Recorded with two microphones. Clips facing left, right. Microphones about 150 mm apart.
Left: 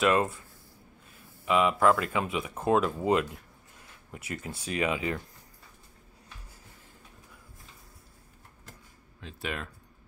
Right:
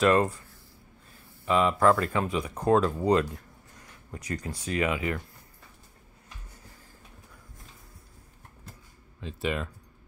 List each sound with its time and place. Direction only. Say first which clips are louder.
0.0 s speech: right 3 dB; 5° left (ahead or behind)
1.4 s speech: right 1 dB; 5° left (ahead or behind)
4.6 s speech: right 1 dB; 20° left (ahead or behind)
9.2 s speech: right 6 dB; centre (ahead or behind)